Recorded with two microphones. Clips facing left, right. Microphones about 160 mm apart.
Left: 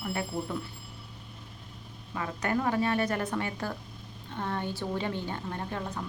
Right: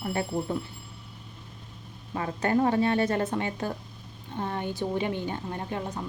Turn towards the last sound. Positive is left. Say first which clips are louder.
# right 2 dB
turn(degrees=-20)  # may be behind; listen again after turning